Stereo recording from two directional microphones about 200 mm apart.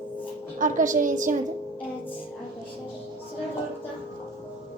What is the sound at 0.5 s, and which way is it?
Speech, 40° right (ahead or behind).